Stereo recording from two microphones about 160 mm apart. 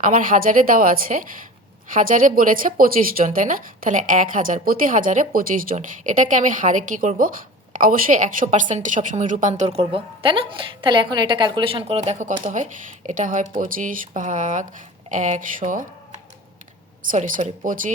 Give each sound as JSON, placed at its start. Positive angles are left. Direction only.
{"t": 0.0, "sound": "a woman's voice", "side_deg": -60}
{"t": 14.1, "sound": "a woman's voice", "side_deg": -50}